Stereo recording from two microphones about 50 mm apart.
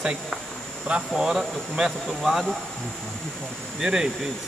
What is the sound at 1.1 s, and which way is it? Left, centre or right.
Speech, centre.